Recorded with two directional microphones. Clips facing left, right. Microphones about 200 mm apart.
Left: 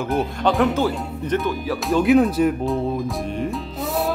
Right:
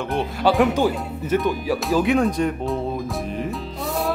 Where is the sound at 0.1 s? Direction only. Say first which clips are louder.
Right 1 dB; centre (ahead or behind).